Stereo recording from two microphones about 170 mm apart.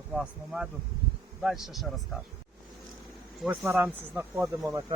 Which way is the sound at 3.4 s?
10° right (ahead or behind).